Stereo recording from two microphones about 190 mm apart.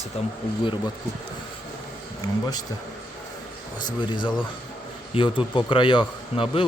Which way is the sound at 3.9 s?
25° left (ahead or behind).